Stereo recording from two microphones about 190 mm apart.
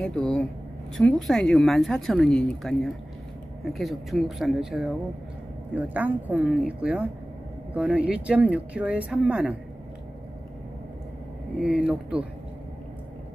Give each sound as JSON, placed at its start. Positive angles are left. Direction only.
{"t": 0.0, "sound": "speech", "side_deg": 5}
{"t": 11.6, "sound": "speech", "side_deg": -5}